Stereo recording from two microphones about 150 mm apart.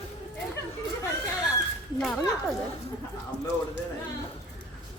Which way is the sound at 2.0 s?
Centre (ahead or behind).